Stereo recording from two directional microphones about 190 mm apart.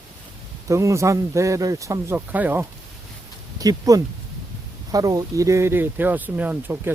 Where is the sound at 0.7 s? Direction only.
15° right (ahead or behind).